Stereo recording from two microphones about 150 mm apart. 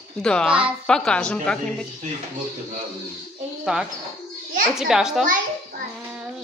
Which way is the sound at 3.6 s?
5° right (ahead or behind).